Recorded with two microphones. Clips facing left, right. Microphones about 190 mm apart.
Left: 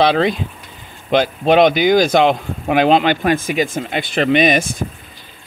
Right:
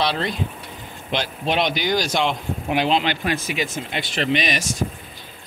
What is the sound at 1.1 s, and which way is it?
Speech, 50° left (ahead or behind).